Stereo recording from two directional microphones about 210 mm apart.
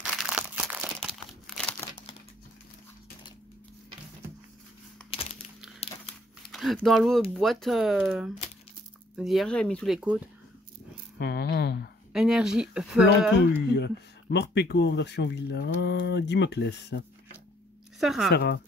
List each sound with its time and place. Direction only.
0.0 s crumpling: 5° right (ahead or behind)
6.5 s speech: centre (ahead or behind)
11.1 s speech: 50° left (ahead or behind)
12.1 s speech: 5° right (ahead or behind)
13.7 s speech: 55° left (ahead or behind)
18.0 s speech: centre (ahead or behind)
18.3 s speech: 50° left (ahead or behind)